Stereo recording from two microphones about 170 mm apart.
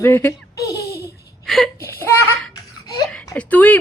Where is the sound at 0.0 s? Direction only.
15° left (ahead or behind).